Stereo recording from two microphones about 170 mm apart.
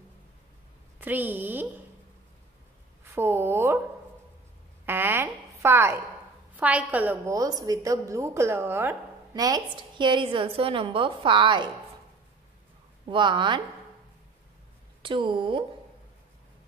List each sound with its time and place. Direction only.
0.9 s a woman's voice: 10° right (ahead or behind)
3.0 s speech: 15° right (ahead or behind)
4.8 s a woman's voice: 10° right (ahead or behind)
7.3 s a woman's voice: 20° right (ahead or behind)
13.0 s a woman's voice: 30° right (ahead or behind)
15.0 s a woman's voice: 30° right (ahead or behind)